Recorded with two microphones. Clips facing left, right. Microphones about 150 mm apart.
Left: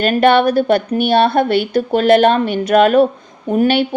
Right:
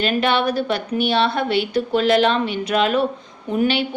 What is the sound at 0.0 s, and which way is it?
A woman's voice, 50° left (ahead or behind).